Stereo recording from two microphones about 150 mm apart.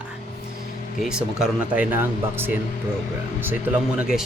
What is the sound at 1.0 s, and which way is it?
Speech, 5° right (ahead or behind).